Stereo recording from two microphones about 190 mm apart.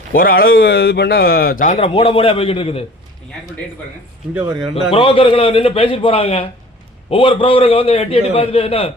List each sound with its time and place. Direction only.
0.1 s speech: 50° left (ahead or behind)
1.8 s a man's voice: 30° left (ahead or behind)
4.7 s a man's voice: 30° left (ahead or behind)